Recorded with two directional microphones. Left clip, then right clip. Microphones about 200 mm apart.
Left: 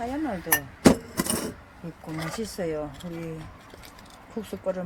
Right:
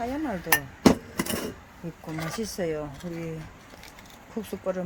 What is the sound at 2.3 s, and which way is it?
Speech, 15° right (ahead or behind).